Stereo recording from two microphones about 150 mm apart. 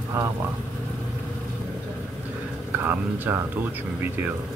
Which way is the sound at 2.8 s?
10° right (ahead or behind).